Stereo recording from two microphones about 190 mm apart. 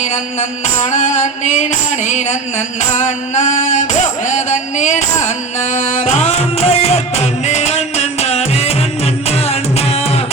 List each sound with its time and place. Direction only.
0.0 s music: 40° left (ahead or behind)